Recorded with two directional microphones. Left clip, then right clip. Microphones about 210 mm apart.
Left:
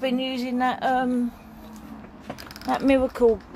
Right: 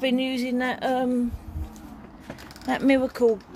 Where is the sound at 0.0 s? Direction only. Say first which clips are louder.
Right 1 dB; 25° right (ahead or behind).